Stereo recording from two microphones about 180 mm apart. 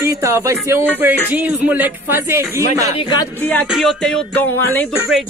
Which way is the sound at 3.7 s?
Centre (ahead or behind).